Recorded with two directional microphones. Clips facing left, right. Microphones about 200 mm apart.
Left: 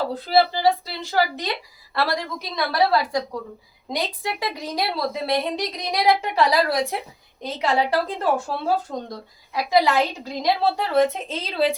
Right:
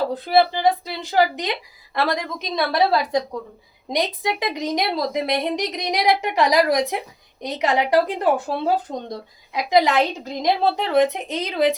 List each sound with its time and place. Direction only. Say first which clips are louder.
0.1 s a woman's voice: right 1 dB; 20° right (ahead or behind)